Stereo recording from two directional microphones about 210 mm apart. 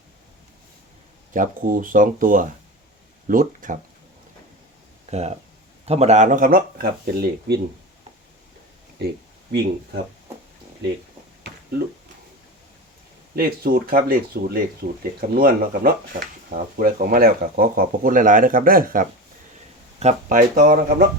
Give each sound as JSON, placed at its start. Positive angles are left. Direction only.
{"t": 1.3, "sound": "speech", "side_deg": -40}
{"t": 5.1, "sound": "speech", "side_deg": -30}
{"t": 9.0, "sound": "speech", "side_deg": -50}
{"t": 13.3, "sound": "speech", "side_deg": -45}